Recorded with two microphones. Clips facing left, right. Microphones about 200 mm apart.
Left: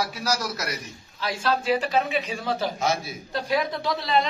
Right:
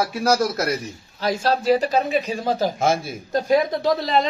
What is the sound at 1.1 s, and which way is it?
A man's voice, 40° right (ahead or behind).